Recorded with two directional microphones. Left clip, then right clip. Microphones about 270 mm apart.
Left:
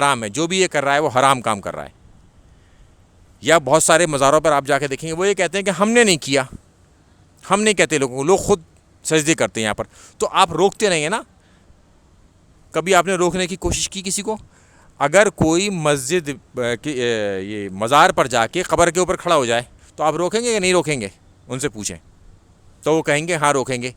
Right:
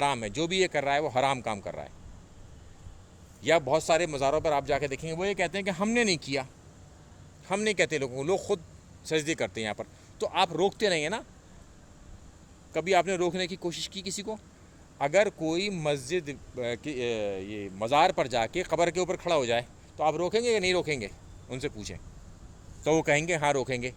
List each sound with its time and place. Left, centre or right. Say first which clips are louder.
0.0 s a man's voice: left 10 dB; left
3.4 s a man's voice: left 10 dB; left
12.7 s a man's voice: left 9 dB; left